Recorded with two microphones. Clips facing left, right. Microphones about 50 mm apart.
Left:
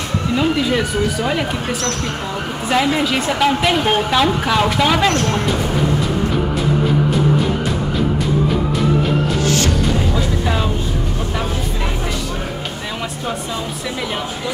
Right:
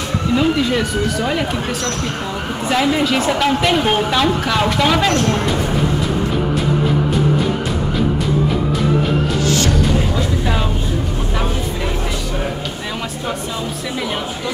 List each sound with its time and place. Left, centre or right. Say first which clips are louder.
0.4 s a woman's voice: even; centre